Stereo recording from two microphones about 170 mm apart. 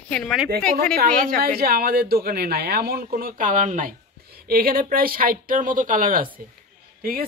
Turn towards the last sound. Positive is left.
turn(degrees=-60)  # may be behind; listen again after turning